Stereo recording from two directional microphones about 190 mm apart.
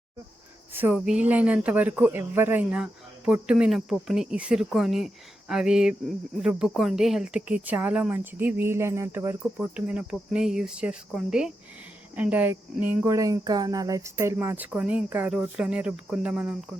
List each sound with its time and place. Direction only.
0.7 s speech: 10° right (ahead or behind)